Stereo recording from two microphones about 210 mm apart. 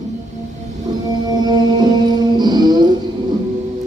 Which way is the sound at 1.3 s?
20° right (ahead or behind).